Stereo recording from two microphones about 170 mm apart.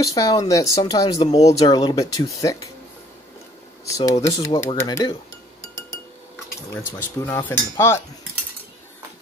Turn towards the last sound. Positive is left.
turn(degrees=15)  # may be behind; listen again after turning